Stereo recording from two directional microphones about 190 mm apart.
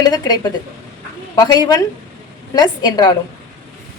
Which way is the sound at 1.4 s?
20° left (ahead or behind).